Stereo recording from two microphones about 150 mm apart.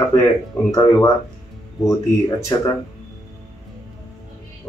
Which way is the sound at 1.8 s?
20° left (ahead or behind).